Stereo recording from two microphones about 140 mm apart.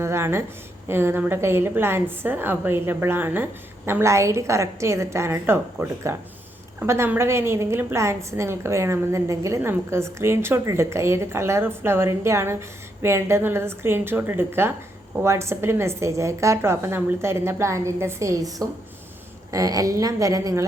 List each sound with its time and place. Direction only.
0.0 s a woman's voice: 20° right (ahead or behind)